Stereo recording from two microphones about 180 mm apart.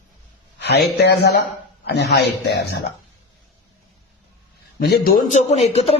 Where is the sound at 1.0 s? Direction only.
65° left (ahead or behind).